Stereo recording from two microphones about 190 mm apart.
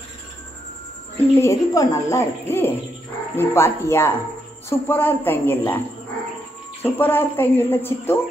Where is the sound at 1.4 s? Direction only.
15° left (ahead or behind).